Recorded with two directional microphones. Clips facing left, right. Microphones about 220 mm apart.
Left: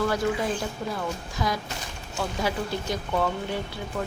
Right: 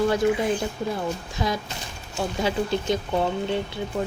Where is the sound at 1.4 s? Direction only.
25° right (ahead or behind).